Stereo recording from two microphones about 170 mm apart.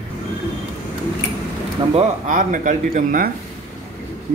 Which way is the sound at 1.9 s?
50° right (ahead or behind).